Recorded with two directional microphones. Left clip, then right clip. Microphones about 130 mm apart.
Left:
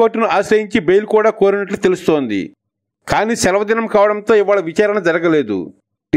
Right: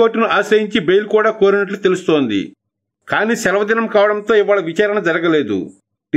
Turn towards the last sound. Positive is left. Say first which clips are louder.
# left 1 dB
turn(degrees=45)  # may be behind; listen again after turning